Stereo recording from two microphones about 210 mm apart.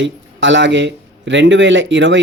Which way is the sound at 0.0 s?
60° right (ahead or behind).